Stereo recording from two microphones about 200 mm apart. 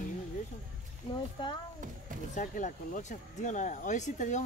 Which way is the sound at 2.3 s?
40° left (ahead or behind).